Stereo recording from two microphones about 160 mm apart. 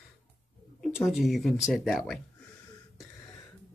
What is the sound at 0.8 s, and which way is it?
Speech, 5° right (ahead or behind).